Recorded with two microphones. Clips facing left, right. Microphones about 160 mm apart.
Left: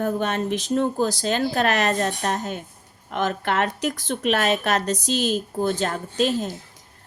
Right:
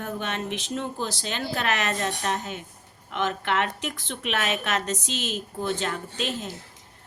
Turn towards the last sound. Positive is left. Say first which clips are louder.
# left 8 dB
turn(degrees=40)  # may be behind; listen again after turning